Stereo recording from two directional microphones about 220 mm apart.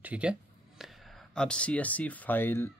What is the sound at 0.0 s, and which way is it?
Speech, 5° right (ahead or behind).